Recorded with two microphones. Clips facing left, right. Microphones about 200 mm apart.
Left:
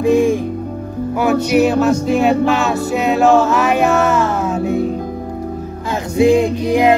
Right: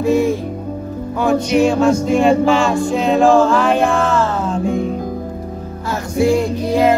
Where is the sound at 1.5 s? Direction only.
5° left (ahead or behind).